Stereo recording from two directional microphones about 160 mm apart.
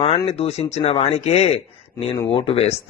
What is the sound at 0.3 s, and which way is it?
Speech, 40° left (ahead or behind).